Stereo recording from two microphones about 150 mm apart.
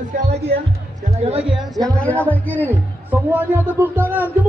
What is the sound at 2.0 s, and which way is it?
Music, 10° left (ahead or behind).